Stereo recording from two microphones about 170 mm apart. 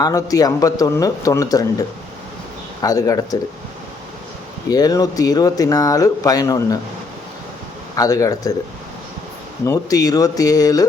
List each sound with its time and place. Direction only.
0.0 s speech: 20° left (ahead or behind)
2.8 s speech: 20° left (ahead or behind)
4.7 s speech: 20° left (ahead or behind)
7.9 s speech: 20° left (ahead or behind)
9.6 s speech: 20° left (ahead or behind)